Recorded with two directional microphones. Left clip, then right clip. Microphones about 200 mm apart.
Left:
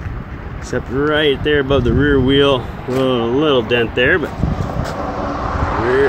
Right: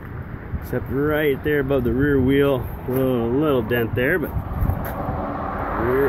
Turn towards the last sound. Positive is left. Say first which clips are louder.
# left 5 dB
turn(degrees=45)  # may be behind; listen again after turning